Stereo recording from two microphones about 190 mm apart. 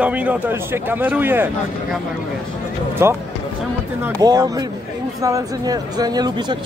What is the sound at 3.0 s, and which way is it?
Speech, 15° right (ahead or behind).